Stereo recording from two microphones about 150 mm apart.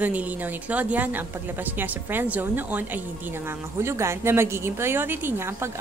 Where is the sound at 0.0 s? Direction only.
10° right (ahead or behind).